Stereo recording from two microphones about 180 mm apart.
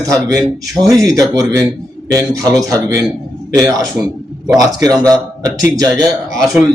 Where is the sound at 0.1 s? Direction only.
20° right (ahead or behind).